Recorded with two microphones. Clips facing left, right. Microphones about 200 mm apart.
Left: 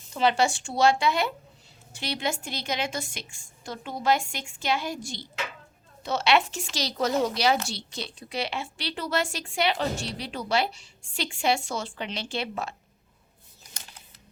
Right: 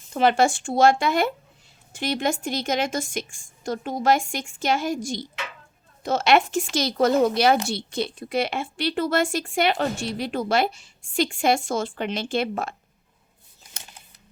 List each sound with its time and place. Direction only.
0.1 s a woman's voice: 50° right (ahead or behind)